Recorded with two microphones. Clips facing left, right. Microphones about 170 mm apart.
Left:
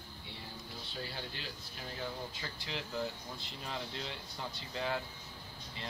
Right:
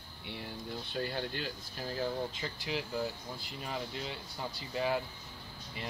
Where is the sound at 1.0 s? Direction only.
55° right (ahead or behind); by 2.1 s 35° right (ahead or behind).